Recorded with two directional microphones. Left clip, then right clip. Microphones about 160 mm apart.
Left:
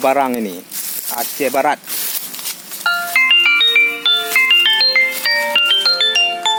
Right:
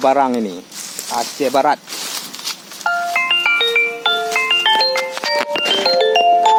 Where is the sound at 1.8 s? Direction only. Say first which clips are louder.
Right 1 dB; 90° left.